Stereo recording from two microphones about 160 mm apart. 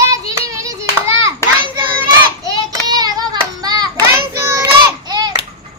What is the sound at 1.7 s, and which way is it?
Child singing, 25° right (ahead or behind).